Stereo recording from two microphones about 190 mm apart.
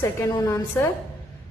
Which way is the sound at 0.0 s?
15° left (ahead or behind).